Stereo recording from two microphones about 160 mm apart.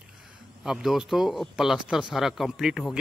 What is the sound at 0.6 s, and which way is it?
Speech, 5° right (ahead or behind).